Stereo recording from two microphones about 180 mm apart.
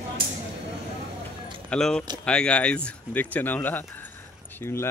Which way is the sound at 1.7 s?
5° left (ahead or behind).